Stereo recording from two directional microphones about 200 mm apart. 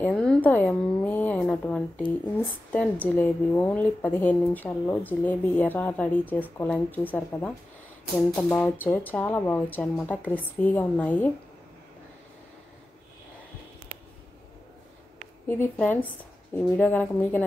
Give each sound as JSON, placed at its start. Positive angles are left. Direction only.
{"t": 0.0, "sound": "a sound", "side_deg": 5}
{"t": 2.3, "sound": "a woman's voice", "side_deg": 5}
{"t": 15.4, "sound": "a woman's voice", "side_deg": 10}